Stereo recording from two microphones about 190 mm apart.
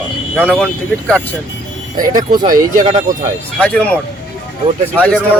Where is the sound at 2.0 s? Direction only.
45° right (ahead or behind).